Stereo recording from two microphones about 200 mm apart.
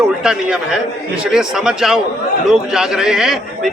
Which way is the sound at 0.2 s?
5° right (ahead or behind).